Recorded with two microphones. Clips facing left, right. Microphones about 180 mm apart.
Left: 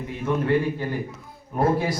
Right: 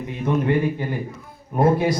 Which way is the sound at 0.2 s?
15° right (ahead or behind).